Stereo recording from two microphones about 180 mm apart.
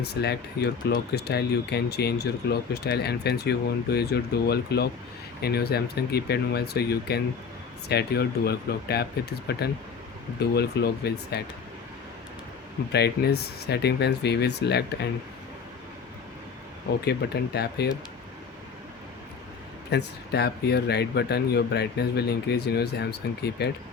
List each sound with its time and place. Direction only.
0.0 s speech: 65° left (ahead or behind)
12.9 s speech: 65° left (ahead or behind)
17.1 s speech: 65° left (ahead or behind)
19.9 s speech: 65° left (ahead or behind)